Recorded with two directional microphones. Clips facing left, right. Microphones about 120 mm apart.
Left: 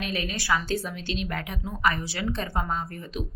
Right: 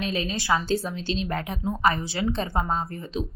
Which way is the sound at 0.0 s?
25° right (ahead or behind).